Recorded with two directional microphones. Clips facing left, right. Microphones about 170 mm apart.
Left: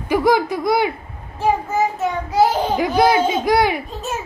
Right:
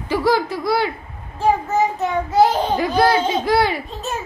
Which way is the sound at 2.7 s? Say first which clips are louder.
Left 1 dB; 15° left (ahead or behind).